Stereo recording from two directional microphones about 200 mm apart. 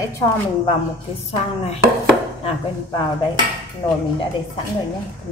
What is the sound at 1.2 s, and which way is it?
Chopping, 30° left (ahead or behind).